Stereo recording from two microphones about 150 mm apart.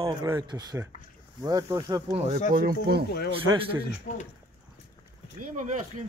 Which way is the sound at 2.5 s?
85° right.